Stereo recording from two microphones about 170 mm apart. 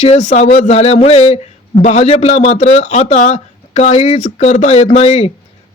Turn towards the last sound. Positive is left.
turn(degrees=40)  # may be behind; listen again after turning